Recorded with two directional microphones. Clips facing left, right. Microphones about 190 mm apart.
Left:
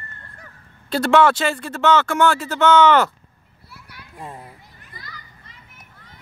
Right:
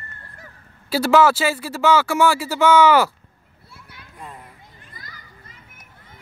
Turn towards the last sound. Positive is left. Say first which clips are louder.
# left 1 dB
turn(degrees=-45)  # may be behind; listen again after turning